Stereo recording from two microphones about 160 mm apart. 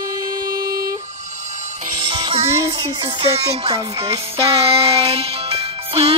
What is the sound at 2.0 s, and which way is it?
Music, 35° right (ahead or behind).